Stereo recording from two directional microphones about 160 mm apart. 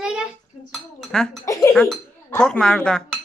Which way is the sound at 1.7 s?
5° left (ahead or behind).